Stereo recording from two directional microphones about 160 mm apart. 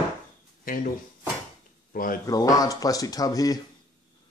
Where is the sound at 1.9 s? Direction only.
60° left (ahead or behind).